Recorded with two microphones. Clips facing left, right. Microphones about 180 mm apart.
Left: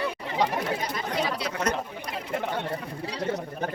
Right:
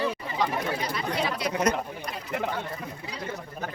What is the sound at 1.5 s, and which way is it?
Speech, 15° right (ahead or behind).